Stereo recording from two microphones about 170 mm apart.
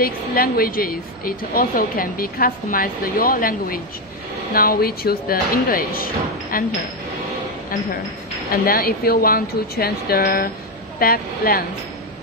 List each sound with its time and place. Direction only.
0.0 s a woman's voice: 60° left (ahead or behind)
8.5 s a woman's voice: 60° left (ahead or behind)